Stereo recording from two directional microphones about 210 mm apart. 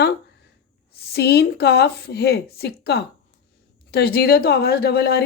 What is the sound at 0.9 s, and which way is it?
Speech, 50° left (ahead or behind).